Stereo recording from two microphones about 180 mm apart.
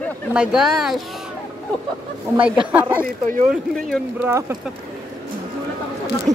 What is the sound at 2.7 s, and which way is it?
Speech, 10° right (ahead or behind).